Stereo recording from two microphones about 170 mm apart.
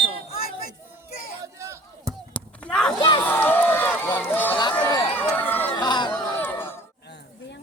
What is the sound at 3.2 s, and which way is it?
Run, 10° left (ahead or behind).